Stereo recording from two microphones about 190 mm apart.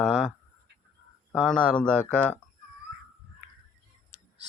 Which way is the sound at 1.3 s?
5° left (ahead or behind).